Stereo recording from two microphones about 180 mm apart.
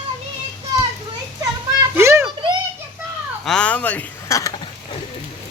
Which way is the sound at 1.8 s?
15° right (ahead or behind).